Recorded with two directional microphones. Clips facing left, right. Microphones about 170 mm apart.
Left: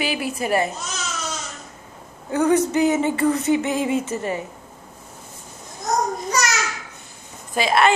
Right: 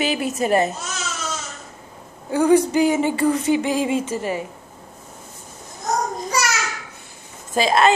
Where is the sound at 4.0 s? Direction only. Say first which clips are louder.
Right 1 dB; 25° left (ahead or behind).